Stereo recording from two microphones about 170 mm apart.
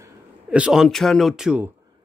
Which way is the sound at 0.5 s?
5° right (ahead or behind).